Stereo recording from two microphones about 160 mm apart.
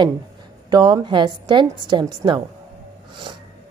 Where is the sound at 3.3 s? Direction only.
30° right (ahead or behind).